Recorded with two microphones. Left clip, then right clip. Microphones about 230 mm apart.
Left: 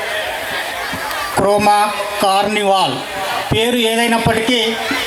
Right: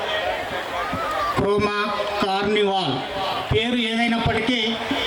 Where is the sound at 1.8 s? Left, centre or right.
Centre.